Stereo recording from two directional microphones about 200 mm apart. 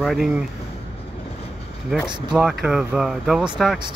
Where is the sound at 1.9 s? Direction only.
5° right (ahead or behind).